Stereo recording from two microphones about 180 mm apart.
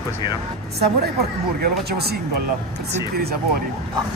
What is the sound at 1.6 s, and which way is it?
Speech, 60° right (ahead or behind).